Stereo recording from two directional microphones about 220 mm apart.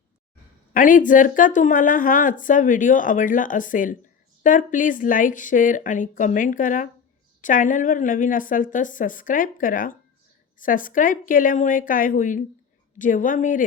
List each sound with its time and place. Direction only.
0.7 s a woman's voice: 35° left (ahead or behind)